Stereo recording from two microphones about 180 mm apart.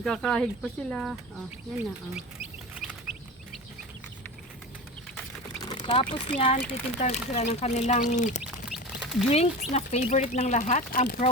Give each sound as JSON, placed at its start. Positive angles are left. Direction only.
{"t": 0.0, "sound": "speech", "side_deg": 0}
{"t": 5.5, "sound": "a sound", "side_deg": 25}
{"t": 5.9, "sound": "speech", "side_deg": 30}
{"t": 8.4, "sound": "duck", "side_deg": 0}
{"t": 9.2, "sound": "speech", "side_deg": 35}